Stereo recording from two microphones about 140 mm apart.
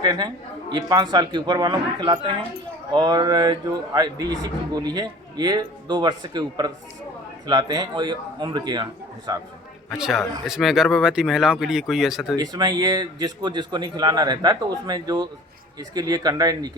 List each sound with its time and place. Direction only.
0.0 s a man's voice: 30° right (ahead or behind)
9.9 s speech: centre (ahead or behind)
12.4 s a man's voice: 30° right (ahead or behind)